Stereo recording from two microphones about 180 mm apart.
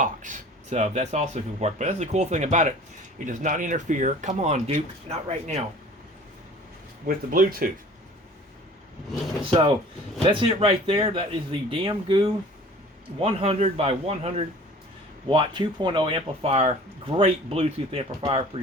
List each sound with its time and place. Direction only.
0.0 s speech: 45° right (ahead or behind)
7.3 s speech: 50° right (ahead or behind)
9.5 s a man's voice: 30° right (ahead or behind)